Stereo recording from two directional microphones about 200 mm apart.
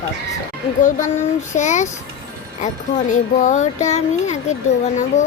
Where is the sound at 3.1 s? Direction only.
40° left (ahead or behind).